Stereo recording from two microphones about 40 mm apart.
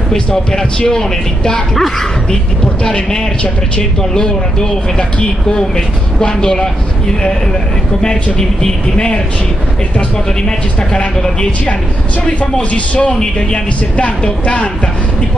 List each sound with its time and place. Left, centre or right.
0.1 s speech: centre
8.0 s speech: centre
12.7 s speech: left